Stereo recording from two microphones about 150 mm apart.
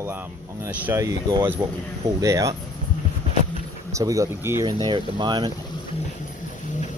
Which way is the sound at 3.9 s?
20° right (ahead or behind).